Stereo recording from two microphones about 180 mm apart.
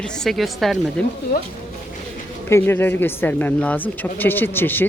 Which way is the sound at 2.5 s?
15° left (ahead or behind).